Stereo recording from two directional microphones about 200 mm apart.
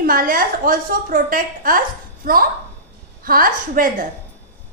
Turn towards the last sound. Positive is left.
turn(degrees=-45)  # may be behind; listen again after turning